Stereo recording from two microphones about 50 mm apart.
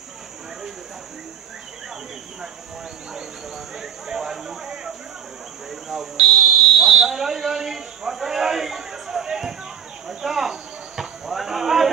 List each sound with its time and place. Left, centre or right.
3.7 s a sound: centre
6.1 s buzzer: centre
10.0 s cricket: centre